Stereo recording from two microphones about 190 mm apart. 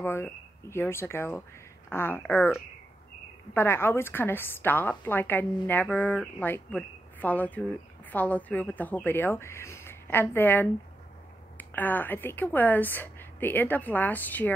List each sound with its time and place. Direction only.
0.0 s a woman's voice: 15° left (ahead or behind)
3.5 s a woman's voice: 10° left (ahead or behind)